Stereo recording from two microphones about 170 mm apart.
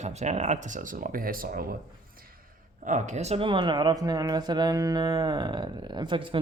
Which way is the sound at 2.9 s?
45° right (ahead or behind).